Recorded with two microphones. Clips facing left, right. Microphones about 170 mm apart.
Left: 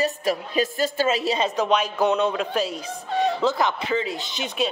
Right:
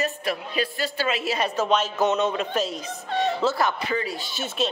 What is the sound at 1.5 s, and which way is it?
Speech, 10° left (ahead or behind).